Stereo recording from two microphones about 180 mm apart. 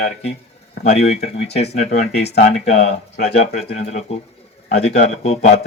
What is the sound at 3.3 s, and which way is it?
Speech, 40° left (ahead or behind).